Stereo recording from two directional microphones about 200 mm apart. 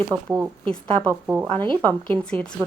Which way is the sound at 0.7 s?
5° left (ahead or behind).